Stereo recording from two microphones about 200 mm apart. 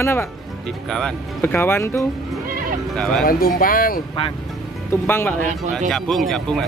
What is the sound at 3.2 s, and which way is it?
Speech, 45° left (ahead or behind).